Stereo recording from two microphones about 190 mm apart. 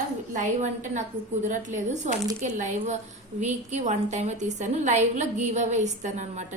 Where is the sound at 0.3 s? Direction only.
40° right (ahead or behind).